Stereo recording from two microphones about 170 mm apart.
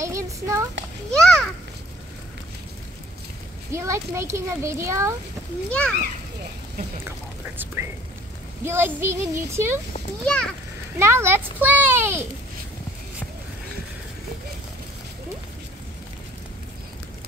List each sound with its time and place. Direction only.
0.0 s a sound: 15° right (ahead or behind)
1.2 s a sound: 5° left (ahead or behind)
3.7 s a child's voice: 15° right (ahead or behind)
5.7 s a child's voice: 5° left (ahead or behind)
7.1 s a child's voice: 15° right (ahead or behind)
10.2 s a child's voice: 5° left (ahead or behind)
11.0 s a child's voice: 15° right (ahead or behind)